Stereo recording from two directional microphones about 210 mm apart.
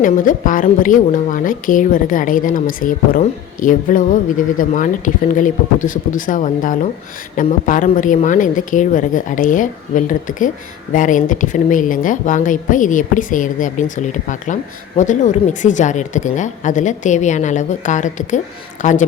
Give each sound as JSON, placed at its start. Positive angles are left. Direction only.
{"t": 0.0, "sound": "a woman's voice", "side_deg": 40}